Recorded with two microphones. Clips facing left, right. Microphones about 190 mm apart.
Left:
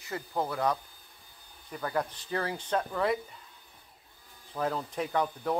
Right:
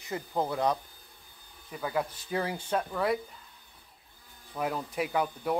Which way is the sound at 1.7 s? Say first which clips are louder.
Even; 5° right (ahead or behind).